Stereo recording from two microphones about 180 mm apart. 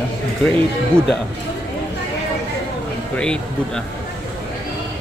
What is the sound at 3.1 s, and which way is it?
Speech, 5° left (ahead or behind).